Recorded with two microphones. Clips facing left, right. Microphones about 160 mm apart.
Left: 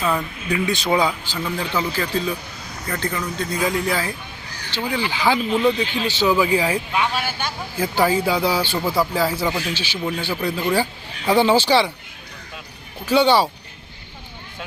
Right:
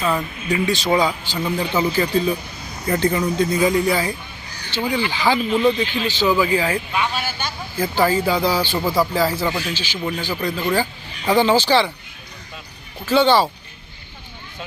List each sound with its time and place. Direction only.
0.0 s speech: centre (ahead or behind)
1.5 s speech: 10° right (ahead or behind)
2.8 s speech: 25° right (ahead or behind)
3.5 s speech: 5° right (ahead or behind)
8.7 s speech: 10° right (ahead or behind)
9.1 s speech: 10° left (ahead or behind)
13.1 s speech: 10° left (ahead or behind)